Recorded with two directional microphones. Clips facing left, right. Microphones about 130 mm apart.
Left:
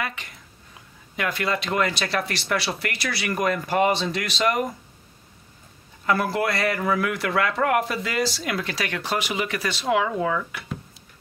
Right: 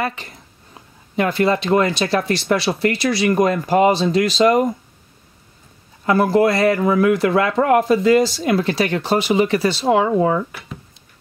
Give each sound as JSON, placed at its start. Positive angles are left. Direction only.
{"t": 0.0, "sound": "speech", "side_deg": -35}
{"t": 6.0, "sound": "speech", "side_deg": -30}